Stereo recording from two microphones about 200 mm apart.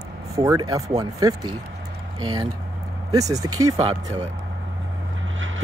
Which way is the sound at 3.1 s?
15° right (ahead or behind).